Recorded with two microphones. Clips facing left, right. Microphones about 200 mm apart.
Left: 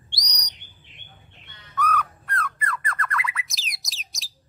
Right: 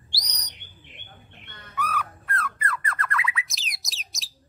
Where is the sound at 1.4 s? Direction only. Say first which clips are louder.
Right 5 dB; 55° right (ahead or behind).